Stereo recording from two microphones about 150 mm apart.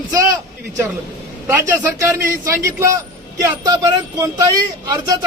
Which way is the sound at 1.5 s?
15° right (ahead or behind).